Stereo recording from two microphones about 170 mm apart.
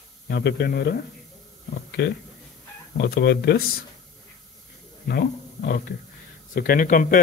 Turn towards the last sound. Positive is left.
turn(degrees=50)  # may be behind; listen again after turning